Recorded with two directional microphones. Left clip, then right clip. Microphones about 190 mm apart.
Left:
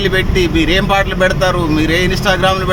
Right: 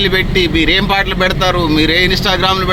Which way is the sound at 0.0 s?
Centre (ahead or behind).